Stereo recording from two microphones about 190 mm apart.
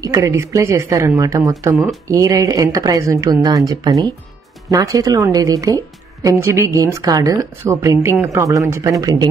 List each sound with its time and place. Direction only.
0.0 s a woman's voice: 15° right (ahead or behind)